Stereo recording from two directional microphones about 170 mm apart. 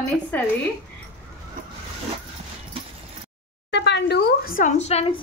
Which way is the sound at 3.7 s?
85° left.